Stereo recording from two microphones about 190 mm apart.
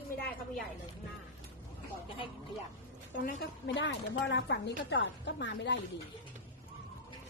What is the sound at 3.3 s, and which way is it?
A woman's voice, 70° left (ahead or behind).